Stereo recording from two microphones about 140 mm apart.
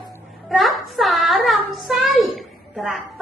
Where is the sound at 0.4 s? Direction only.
Centre (ahead or behind).